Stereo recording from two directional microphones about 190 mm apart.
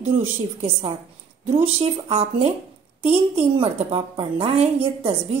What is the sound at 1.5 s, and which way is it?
A woman's voice, 30° right (ahead or behind).